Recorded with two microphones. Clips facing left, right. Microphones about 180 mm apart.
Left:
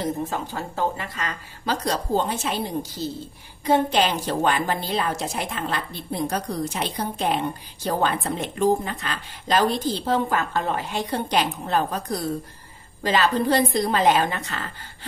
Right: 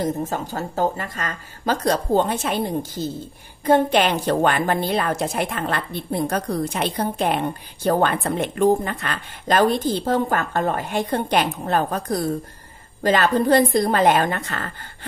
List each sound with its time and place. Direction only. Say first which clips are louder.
0.0 s a woman's voice: right 3 dB; 45° right (ahead or behind)